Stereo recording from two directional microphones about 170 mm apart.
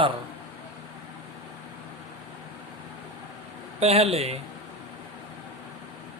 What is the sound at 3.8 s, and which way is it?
Speech, 35° right (ahead or behind).